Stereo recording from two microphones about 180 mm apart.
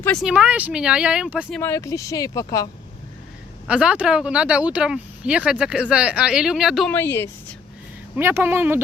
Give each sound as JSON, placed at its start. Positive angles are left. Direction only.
{"t": 0.0, "sound": "speech", "side_deg": 5}
{"t": 0.3, "sound": "speech", "side_deg": -5}
{"t": 1.5, "sound": "speech", "side_deg": 15}
{"t": 3.7, "sound": "speech", "side_deg": -5}
{"t": 6.9, "sound": "a woman's voice", "side_deg": 15}
{"t": 8.1, "sound": "speech", "side_deg": -15}